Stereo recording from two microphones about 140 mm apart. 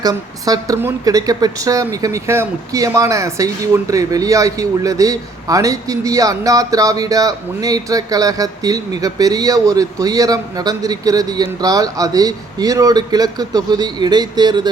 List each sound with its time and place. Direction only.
0.0 s a woman's voice: 25° right (ahead or behind)